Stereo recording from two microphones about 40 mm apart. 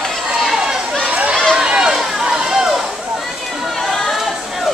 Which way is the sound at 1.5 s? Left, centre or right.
Centre.